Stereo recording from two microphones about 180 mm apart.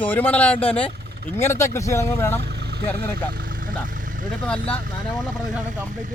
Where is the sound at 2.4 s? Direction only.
65° right (ahead or behind).